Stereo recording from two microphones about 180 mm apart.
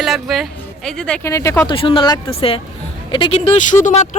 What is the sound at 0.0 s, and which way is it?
Speech, centre (ahead or behind).